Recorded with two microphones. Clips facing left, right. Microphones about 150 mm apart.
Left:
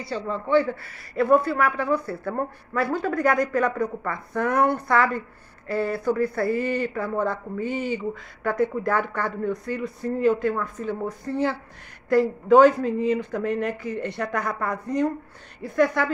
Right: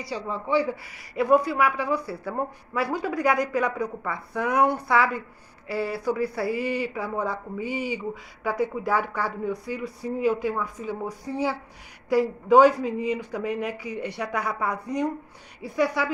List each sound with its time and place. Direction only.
0.1 s speech: 10° right (ahead or behind)